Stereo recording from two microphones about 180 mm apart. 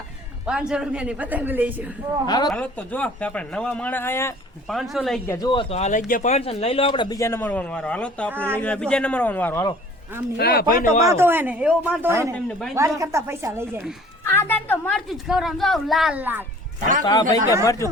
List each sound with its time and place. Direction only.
0.4 s speech: 5° right (ahead or behind)
2.2 s speech: 25° left (ahead or behind)
2.5 s speech: 5° left (ahead or behind)
4.7 s a woman's voice: centre (ahead or behind)
5.2 s speech: 15° left (ahead or behind)
5.5 s speech: 30° left (ahead or behind); by 8.3 s 5° left (ahead or behind)
8.3 s speech: 10° right (ahead or behind)
8.5 s speech: 5° left (ahead or behind)
10.3 s speech: 60° left (ahead or behind)
11.0 s speech: 15° right (ahead or behind)
12.3 s a woman's voice: 5° left (ahead or behind)
13.0 s speech: 15° right (ahead or behind)
14.3 s a woman's voice: 10° left (ahead or behind); by 16.5 s 10° right (ahead or behind)
17.1 s speech: 20° left (ahead or behind)